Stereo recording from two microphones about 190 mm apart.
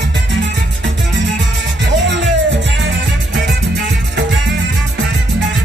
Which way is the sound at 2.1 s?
70° right (ahead or behind).